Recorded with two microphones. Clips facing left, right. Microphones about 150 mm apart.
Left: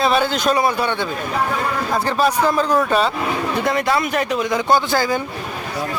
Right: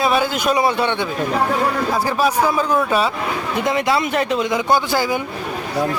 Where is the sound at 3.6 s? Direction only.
20° right (ahead or behind).